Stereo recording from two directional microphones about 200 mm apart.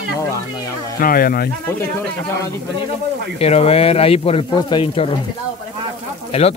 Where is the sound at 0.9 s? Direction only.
45° left (ahead or behind).